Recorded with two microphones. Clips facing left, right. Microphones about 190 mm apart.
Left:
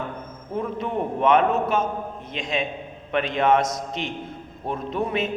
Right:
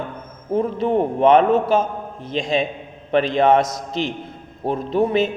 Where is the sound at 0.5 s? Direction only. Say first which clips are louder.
Right 8 dB; 30° right (ahead or behind).